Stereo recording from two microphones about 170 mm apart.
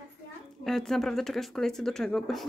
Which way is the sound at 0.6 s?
Centre (ahead or behind).